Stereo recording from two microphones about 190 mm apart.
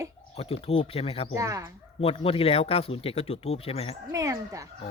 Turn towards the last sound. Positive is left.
turn(degrees=-15)  # may be behind; listen again after turning